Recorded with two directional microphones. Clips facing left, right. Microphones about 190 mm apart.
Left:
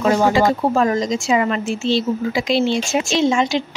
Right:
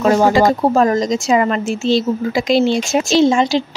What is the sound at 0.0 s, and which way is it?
Speech, 45° right (ahead or behind).